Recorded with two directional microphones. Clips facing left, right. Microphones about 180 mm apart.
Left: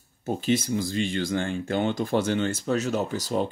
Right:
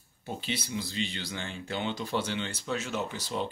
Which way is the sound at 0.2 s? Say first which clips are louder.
Left 11 dB; 45° left (ahead or behind).